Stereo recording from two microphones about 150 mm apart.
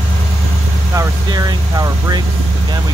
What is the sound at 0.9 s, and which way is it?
Speech, 25° right (ahead or behind).